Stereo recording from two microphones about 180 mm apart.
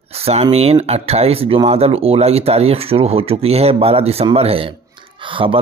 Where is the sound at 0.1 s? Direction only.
35° right (ahead or behind).